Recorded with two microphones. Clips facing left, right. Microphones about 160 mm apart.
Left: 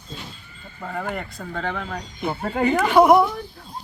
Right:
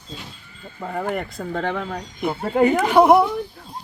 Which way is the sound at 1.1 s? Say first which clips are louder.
Right 4 dB; 50° right (ahead or behind).